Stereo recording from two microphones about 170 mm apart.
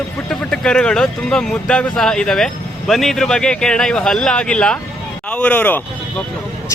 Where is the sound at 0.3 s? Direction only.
5° left (ahead or behind).